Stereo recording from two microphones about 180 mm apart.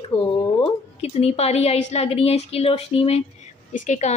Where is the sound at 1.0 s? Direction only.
35° left (ahead or behind).